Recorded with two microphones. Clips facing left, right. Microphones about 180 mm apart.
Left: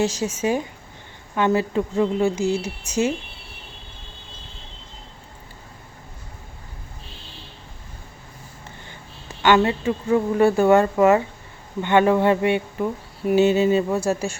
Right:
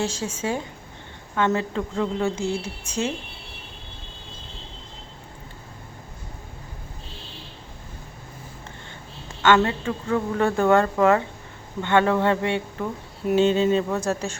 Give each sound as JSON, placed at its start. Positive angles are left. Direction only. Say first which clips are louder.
{"t": 0.0, "sound": "speech", "louder": "left 5 dB", "side_deg": 15}
{"t": 2.5, "sound": "speech", "louder": "left 4 dB", "side_deg": -55}
{"t": 9.4, "sound": "speech", "louder": "left 2 dB", "side_deg": 10}